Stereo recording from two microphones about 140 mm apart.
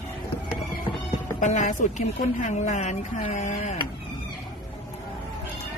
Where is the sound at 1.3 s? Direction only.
60° left (ahead or behind).